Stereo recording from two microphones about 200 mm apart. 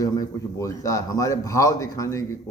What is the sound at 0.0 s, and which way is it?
A man's voice, 15° left (ahead or behind).